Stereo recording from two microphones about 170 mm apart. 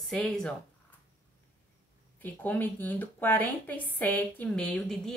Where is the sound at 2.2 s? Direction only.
10° left (ahead or behind).